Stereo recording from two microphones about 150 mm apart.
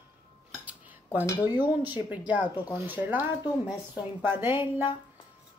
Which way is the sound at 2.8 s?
10° right (ahead or behind).